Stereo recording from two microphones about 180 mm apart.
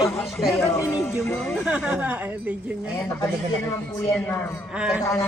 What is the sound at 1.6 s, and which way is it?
Speech, 5° right (ahead or behind).